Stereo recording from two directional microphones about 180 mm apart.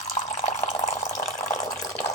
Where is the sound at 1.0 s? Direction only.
15° left (ahead or behind).